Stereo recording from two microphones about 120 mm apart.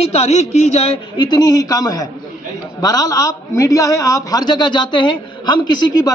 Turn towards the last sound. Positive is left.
turn(degrees=40)  # may be behind; listen again after turning